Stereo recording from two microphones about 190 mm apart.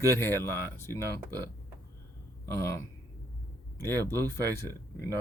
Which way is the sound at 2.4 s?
15° left (ahead or behind).